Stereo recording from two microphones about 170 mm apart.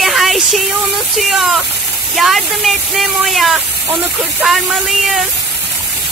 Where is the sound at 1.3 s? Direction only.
Centre (ahead or behind).